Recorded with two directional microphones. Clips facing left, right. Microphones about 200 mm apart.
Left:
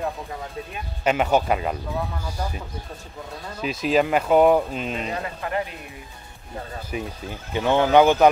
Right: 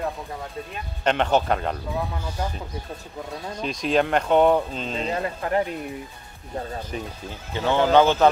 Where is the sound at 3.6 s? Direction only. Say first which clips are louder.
Left 1 dB; 5° left (ahead or behind).